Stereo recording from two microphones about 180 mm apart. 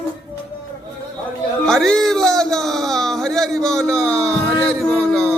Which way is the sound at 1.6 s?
Centre (ahead or behind).